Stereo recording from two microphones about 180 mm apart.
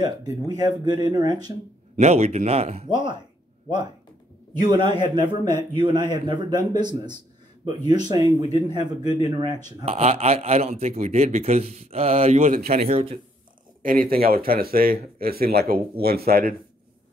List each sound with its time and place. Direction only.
0.0 s a man's voice: 20° right (ahead or behind)
2.0 s speech: 35° right (ahead or behind)
4.6 s a man's voice: 25° right (ahead or behind)
9.8 s speech: 35° right (ahead or behind)
13.8 s speech: 50° right (ahead or behind)